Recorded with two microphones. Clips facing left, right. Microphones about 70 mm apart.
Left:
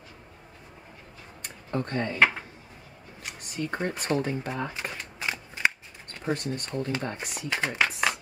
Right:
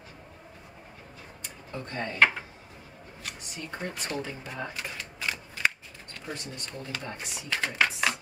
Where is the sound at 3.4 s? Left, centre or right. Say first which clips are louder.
Left 8 dB; left.